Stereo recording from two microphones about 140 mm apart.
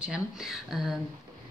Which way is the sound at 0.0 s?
5° right (ahead or behind).